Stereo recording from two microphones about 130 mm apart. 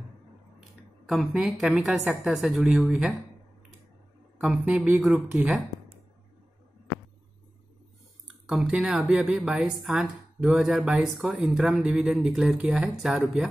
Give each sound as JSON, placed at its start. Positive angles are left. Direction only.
{"t": 1.0, "sound": "speech", "side_deg": 0}
{"t": 4.4, "sound": "a woman's voice", "side_deg": -5}
{"t": 8.5, "sound": "speech", "side_deg": -5}